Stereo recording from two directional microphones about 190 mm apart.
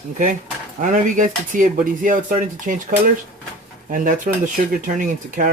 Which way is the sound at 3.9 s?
45° right (ahead or behind).